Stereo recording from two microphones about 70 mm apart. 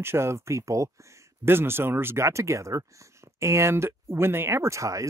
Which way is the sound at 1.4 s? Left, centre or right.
Right.